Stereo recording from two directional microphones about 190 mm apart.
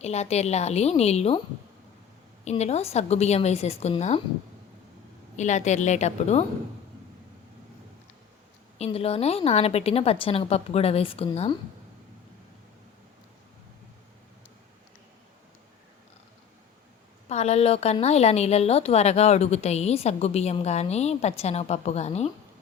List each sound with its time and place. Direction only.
0.0 s a woman's voice: 35° left (ahead or behind)
2.4 s a woman's voice: 35° left (ahead or behind)
5.4 s a woman's voice: 40° left (ahead or behind)
8.8 s a woman's voice: 30° left (ahead or behind)
17.2 s a woman's voice: 35° left (ahead or behind)